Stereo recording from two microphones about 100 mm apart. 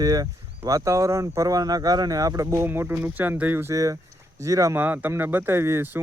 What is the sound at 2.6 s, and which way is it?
Speech, 20° right (ahead or behind).